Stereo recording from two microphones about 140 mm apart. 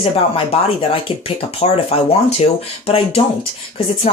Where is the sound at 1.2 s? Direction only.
45° left (ahead or behind).